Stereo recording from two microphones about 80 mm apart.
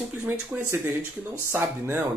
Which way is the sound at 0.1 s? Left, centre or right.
Right.